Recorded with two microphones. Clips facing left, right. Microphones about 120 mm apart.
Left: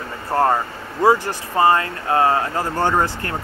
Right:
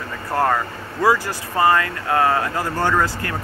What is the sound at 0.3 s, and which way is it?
Speech, 25° left (ahead or behind).